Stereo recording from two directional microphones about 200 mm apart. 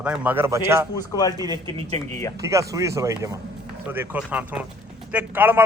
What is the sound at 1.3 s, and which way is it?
A man's voice, 20° right (ahead or behind).